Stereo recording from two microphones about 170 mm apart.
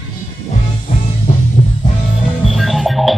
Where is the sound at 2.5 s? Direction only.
Centre (ahead or behind).